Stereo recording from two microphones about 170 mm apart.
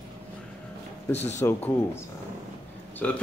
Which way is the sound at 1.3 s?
15° left (ahead or behind).